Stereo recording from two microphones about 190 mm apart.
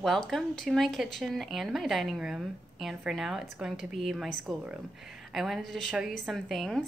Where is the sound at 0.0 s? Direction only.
Centre (ahead or behind).